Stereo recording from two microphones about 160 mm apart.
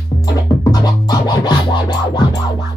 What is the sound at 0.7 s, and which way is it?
Music, 25° left (ahead or behind).